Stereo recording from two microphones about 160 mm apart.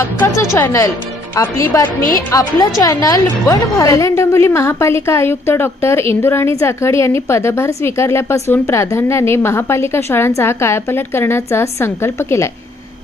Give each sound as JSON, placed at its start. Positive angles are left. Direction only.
{"t": 0.0, "sound": "a woman's voice", "side_deg": 15}